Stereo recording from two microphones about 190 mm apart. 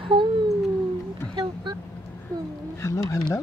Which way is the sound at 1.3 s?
25° right (ahead or behind).